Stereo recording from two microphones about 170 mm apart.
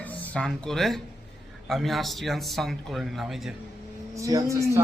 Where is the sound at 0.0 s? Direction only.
10° left (ahead or behind).